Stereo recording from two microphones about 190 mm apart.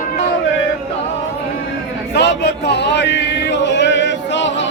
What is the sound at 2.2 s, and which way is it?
Music, 65° left (ahead or behind).